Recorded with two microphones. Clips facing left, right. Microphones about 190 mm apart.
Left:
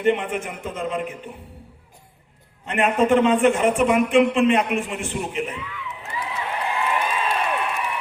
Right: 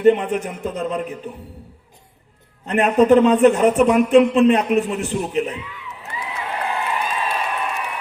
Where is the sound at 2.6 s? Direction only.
40° right (ahead or behind).